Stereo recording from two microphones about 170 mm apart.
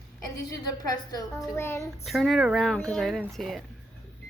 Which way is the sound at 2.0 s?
Centre (ahead or behind).